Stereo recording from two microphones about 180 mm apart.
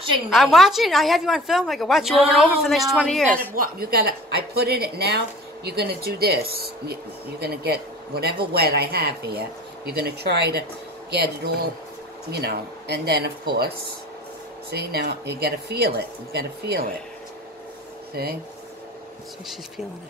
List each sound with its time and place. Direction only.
0.3 s speech: centre (ahead or behind)
3.5 s speech: 55° right (ahead or behind)